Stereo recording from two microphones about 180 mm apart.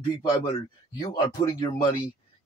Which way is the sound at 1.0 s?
20° left (ahead or behind).